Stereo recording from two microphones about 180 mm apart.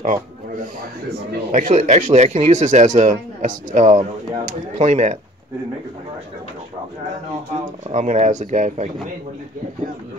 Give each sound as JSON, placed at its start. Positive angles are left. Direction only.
{"t": 0.0, "sound": "speech", "side_deg": -45}
{"t": 7.9, "sound": "speech", "side_deg": -40}